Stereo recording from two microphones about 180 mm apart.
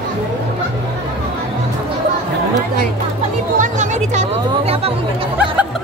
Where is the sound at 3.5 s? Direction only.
40° right (ahead or behind).